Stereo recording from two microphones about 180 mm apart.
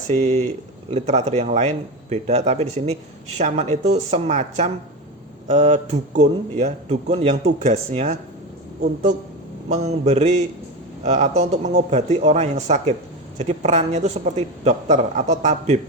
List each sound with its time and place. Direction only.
0.1 s speech: 35° right (ahead or behind)
9.6 s speech: 35° right (ahead or behind)